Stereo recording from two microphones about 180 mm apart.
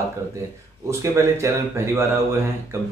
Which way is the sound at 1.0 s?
15° right (ahead or behind).